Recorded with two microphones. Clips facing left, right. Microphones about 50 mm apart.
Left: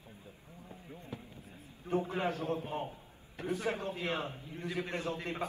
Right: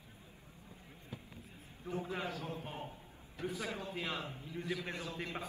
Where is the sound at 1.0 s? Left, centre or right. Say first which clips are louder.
Left 1 dB; left.